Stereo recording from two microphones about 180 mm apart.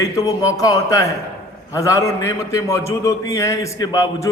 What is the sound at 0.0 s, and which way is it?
A man's voice, 20° left (ahead or behind).